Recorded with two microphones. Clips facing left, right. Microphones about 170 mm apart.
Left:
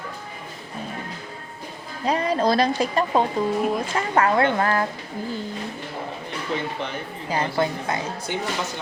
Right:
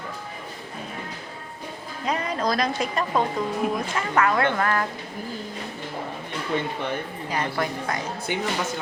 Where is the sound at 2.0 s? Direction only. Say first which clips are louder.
Left 5 dB; 30° left (ahead or behind).